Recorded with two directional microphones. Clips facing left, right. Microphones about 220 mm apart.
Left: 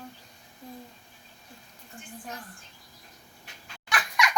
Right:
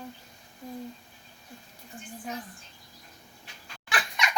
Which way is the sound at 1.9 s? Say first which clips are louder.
Right 2 dB; 20° right (ahead or behind).